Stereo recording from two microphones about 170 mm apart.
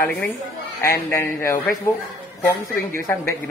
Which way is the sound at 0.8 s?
15° left (ahead or behind).